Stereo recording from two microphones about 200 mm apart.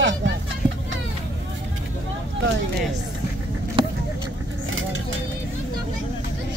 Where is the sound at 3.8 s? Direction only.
25° right (ahead or behind).